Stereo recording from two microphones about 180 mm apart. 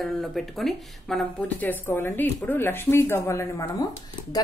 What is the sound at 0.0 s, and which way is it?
Speech, centre (ahead or behind).